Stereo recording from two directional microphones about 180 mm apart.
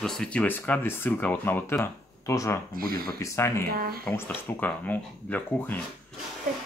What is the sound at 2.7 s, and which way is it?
Speech, 55° right (ahead or behind).